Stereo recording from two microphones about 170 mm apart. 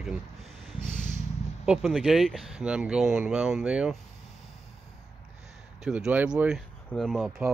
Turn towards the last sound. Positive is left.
turn(degrees=0)  # may be behind; listen again after turning